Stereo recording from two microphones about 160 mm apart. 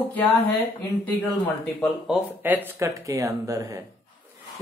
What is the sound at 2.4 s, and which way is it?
A woman's voice, 10° right (ahead or behind).